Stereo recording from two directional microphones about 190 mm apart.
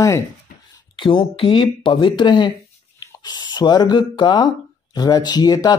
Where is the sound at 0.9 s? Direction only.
25° left (ahead or behind).